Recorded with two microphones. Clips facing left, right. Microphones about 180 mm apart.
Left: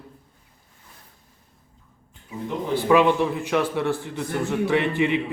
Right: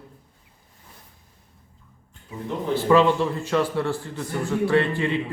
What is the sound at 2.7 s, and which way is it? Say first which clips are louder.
A man's voice: even; 15° left (ahead or behind).